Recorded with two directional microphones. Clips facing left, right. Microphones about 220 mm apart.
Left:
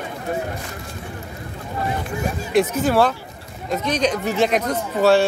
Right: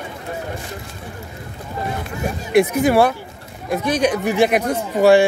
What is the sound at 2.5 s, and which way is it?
A man's voice, 10° right (ahead or behind).